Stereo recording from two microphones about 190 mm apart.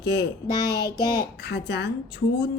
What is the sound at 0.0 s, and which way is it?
Speech, 60° left (ahead or behind).